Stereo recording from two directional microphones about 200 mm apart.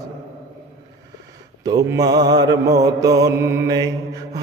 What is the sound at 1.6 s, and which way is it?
Mantra, 20° right (ahead or behind).